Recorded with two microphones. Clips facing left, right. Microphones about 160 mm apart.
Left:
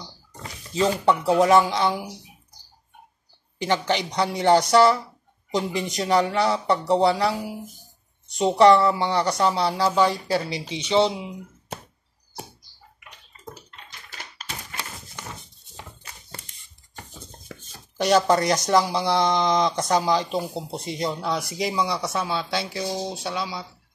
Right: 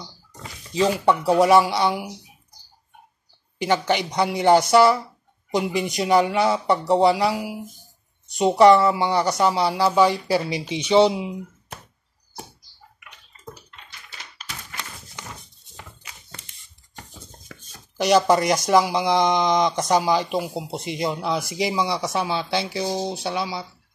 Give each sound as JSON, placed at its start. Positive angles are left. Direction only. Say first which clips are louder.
{"t": 0.7, "sound": "speech", "louder": "right 1 dB", "side_deg": -10}
{"t": 3.6, "sound": "speech", "louder": "right 2 dB", "side_deg": -10}
{"t": 13.7, "sound": "typewriter", "louder": "left 1 dB", "side_deg": 50}
{"t": 18.0, "sound": "speech", "louder": "right 2 dB", "side_deg": -10}
{"t": 22.4, "sound": "speech", "louder": "right 3 dB", "side_deg": -5}
{"t": 22.8, "sound": "speech", "louder": "right 3 dB", "side_deg": -25}
{"t": 23.3, "sound": "speech", "louder": "right 3 dB", "side_deg": -10}